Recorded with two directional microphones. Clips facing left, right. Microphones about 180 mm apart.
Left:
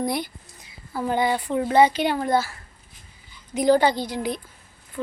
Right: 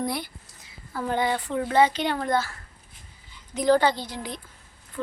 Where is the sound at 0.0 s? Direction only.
15° left (ahead or behind).